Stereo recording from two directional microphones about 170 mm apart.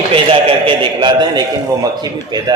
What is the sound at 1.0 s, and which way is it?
Speech, 25° right (ahead or behind).